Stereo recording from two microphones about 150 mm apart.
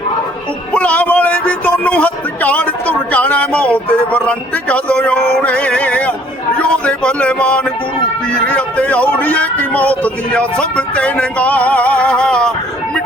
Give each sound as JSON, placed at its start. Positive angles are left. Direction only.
{"t": 0.7, "sound": "a man's voice", "side_deg": 10}